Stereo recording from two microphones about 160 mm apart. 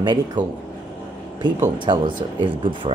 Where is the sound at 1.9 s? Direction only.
30° right (ahead or behind).